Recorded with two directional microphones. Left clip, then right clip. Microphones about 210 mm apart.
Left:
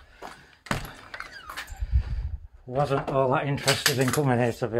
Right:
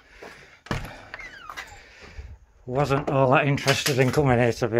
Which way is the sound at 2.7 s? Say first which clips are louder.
Right 2 dB; 30° right (ahead or behind).